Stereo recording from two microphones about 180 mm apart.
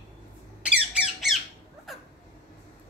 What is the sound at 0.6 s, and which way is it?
Squawk, 5° right (ahead or behind).